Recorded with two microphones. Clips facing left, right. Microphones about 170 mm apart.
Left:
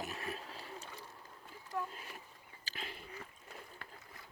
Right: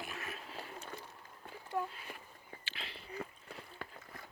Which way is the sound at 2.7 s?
45° left (ahead or behind).